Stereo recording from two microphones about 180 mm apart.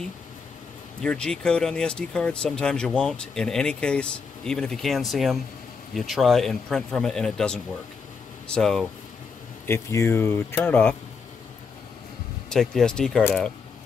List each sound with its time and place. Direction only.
1.0 s speech: 5° left (ahead or behind)
9.7 s speech: 15° left (ahead or behind)
12.4 s speech: 5° left (ahead or behind)